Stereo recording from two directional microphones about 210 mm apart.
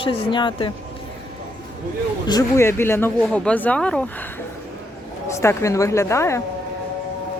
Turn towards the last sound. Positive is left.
turn(degrees=15)  # may be behind; listen again after turning